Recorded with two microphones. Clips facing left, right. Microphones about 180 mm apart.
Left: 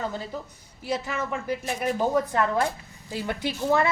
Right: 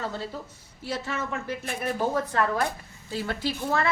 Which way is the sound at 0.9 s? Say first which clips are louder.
Left 2 dB; 15° left (ahead or behind).